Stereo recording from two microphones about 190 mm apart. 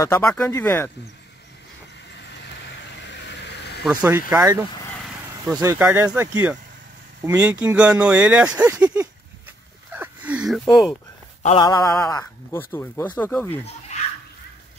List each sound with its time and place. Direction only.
0.0 s speech: 15° left (ahead or behind)
3.2 s vehicle: 60° left (ahead or behind)
3.8 s speech: 10° right (ahead or behind)
4.9 s a sound: centre (ahead or behind)
5.6 s speech: 15° right (ahead or behind)
9.9 s a sound: 10° right (ahead or behind)
10.7 s speech: centre (ahead or behind)
11.4 s mantra: 25° left (ahead or behind)
12.1 s speech: 15° left (ahead or behind)